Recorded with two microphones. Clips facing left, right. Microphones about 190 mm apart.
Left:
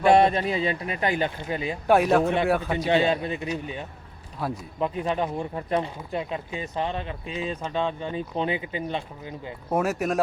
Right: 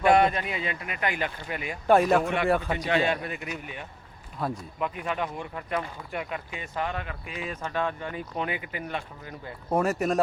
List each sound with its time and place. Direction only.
0.0 s speech: 30° left (ahead or behind)
1.9 s speech: 5° left (ahead or behind)
2.7 s speech: 25° left (ahead or behind)
4.4 s speech: 5° left (ahead or behind)
4.8 s speech: 30° left (ahead or behind)
9.6 s speech: 5° left (ahead or behind)